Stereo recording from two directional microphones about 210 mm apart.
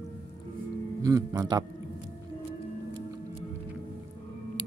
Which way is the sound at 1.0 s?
15° right (ahead or behind).